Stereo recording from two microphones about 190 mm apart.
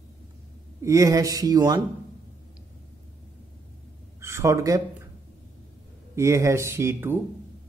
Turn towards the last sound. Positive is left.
turn(degrees=-10)  # may be behind; listen again after turning